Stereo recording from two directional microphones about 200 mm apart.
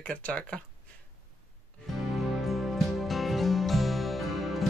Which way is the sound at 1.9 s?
Centre (ahead or behind).